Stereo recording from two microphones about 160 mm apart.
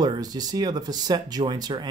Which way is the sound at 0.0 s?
25° right (ahead or behind).